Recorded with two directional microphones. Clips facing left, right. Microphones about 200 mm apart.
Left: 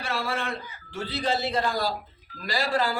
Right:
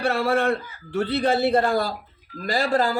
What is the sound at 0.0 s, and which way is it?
A man's voice, 60° right (ahead or behind).